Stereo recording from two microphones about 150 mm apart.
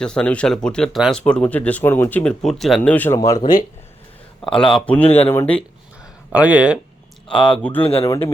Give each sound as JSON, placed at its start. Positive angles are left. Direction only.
{"t": 0.0, "sound": "speech", "side_deg": 5}
{"t": 3.2, "sound": "a man's voice", "side_deg": 25}
{"t": 4.7, "sound": "speech", "side_deg": 10}
{"t": 6.3, "sound": "speech", "side_deg": -10}
{"t": 7.3, "sound": "speech", "side_deg": 5}
{"t": 7.8, "sound": "a man's voice", "side_deg": 40}